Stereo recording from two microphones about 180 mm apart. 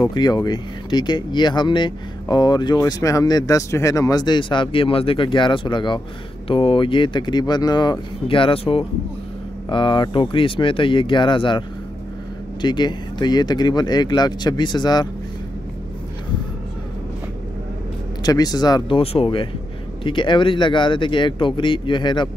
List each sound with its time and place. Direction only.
0.0 s speech: 25° left (ahead or behind)
12.6 s speech: 25° left (ahead or behind)
18.2 s speech: 20° left (ahead or behind)